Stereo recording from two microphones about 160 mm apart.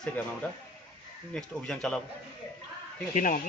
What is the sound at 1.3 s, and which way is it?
Speech, 5° left (ahead or behind).